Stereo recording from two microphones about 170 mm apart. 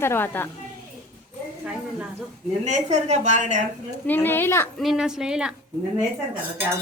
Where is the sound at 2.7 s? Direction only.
45° right (ahead or behind).